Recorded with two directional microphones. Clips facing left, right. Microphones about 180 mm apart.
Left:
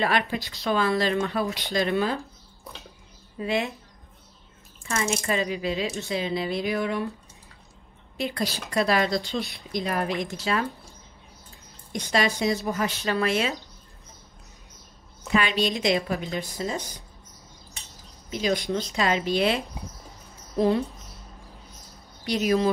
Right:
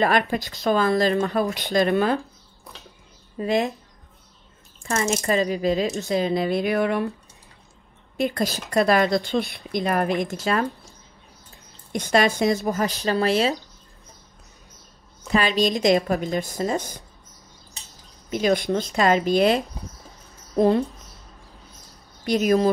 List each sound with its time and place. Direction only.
0.0 s speech: 45° right (ahead or behind)
2.7 s speech: centre (ahead or behind)
3.3 s speech: 40° right (ahead or behind)
4.8 s speech: 45° right (ahead or behind); by 7.1 s 60° right (ahead or behind)
8.2 s speech: 50° right (ahead or behind)
11.9 s speech: 55° right (ahead or behind)
12.6 s speech: 35° right (ahead or behind)
15.3 s speech: 40° right (ahead or behind)
18.3 s speech: 55° right (ahead or behind)
22.2 s speech: 55° right (ahead or behind)